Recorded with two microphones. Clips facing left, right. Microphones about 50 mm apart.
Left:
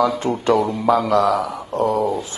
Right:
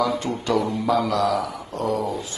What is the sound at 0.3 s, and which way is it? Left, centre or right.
A man's voice, left.